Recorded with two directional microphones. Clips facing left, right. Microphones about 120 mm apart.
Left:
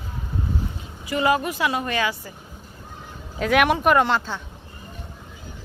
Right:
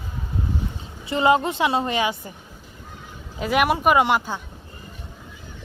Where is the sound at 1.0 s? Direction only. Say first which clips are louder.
Right 3 dB; 25° right (ahead or behind).